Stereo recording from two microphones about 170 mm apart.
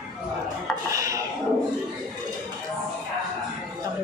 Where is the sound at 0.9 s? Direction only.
20° right (ahead or behind).